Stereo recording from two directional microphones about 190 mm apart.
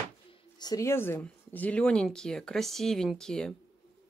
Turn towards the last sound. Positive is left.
turn(degrees=5)  # may be behind; listen again after turning